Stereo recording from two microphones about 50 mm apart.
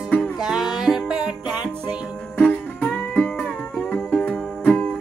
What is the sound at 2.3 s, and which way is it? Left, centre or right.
Music, left.